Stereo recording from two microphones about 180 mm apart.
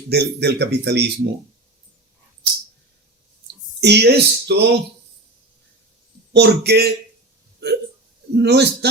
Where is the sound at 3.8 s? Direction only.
70° right (ahead or behind).